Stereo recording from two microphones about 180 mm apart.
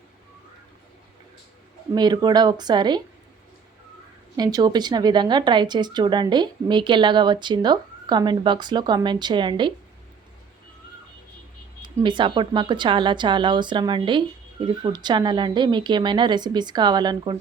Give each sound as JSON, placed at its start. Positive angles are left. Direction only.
{"t": 1.9, "sound": "speech", "side_deg": -25}
{"t": 4.4, "sound": "speech", "side_deg": -20}
{"t": 11.8, "sound": "speech", "side_deg": -25}